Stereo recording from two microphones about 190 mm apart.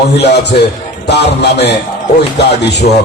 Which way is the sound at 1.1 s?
60° left (ahead or behind).